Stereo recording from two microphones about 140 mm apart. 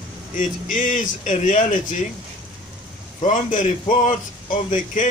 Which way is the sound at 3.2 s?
65° left (ahead or behind).